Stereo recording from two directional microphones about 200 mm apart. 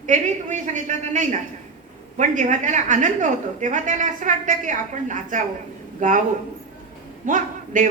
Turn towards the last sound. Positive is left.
turn(degrees=-40)  # may be behind; listen again after turning